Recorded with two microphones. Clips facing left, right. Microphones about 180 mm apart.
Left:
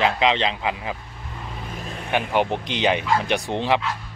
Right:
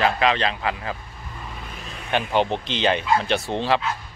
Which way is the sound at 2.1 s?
10° left (ahead or behind).